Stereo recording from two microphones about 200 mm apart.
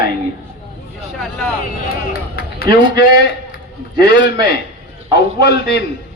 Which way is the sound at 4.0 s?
60° left (ahead or behind).